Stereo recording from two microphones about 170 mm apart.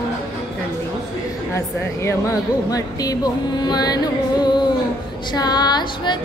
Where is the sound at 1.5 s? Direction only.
15° left (ahead or behind).